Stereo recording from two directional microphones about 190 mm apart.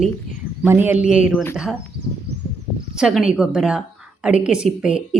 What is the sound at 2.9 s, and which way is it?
A woman's voice, 5° right (ahead or behind).